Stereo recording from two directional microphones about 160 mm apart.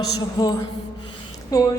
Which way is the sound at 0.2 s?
25° left (ahead or behind).